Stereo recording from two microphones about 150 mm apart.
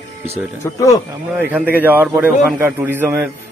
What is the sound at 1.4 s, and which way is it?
A man's voice, 10° right (ahead or behind).